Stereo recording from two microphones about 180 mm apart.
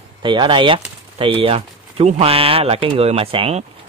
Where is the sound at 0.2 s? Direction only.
25° right (ahead or behind).